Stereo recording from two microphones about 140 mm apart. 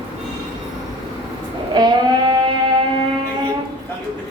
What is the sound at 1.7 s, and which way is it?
Sheep, 30° right (ahead or behind).